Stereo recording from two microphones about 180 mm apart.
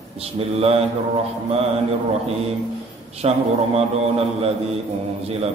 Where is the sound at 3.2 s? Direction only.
35° right (ahead or behind).